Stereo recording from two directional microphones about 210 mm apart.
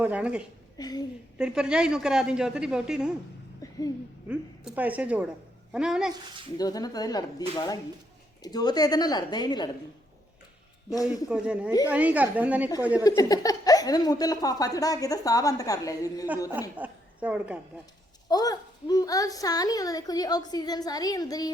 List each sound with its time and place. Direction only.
0.0 s a woman's voice: 5° right (ahead or behind)
0.8 s speech: 20° left (ahead or behind)
1.4 s a woman's voice: 5° right (ahead or behind)
3.6 s a sound: 15° left (ahead or behind)
4.3 s a woman's voice: 5° right (ahead or behind)
6.6 s a woman's voice: 20° left (ahead or behind)
11.3 s a woman's voice: 5° right (ahead or behind)
13.0 s speech: 15° left (ahead or behind)
16.5 s a woman's voice: 10° right (ahead or behind)
18.3 s speech: 20° left (ahead or behind)